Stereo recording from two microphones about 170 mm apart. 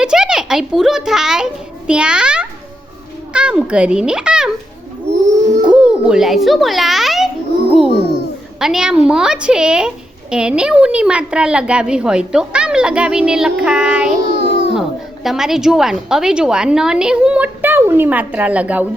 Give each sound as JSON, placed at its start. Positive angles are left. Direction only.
{"t": 0.0, "sound": "a woman's voice", "side_deg": -5}
{"t": 5.6, "sound": "a child's voice", "side_deg": -5}
{"t": 7.9, "sound": "a child's voice", "side_deg": 75}
{"t": 8.5, "sound": "a woman's voice", "side_deg": -5}
{"t": 14.3, "sound": "babbling", "side_deg": 90}
{"t": 14.7, "sound": "a woman's voice", "side_deg": 0}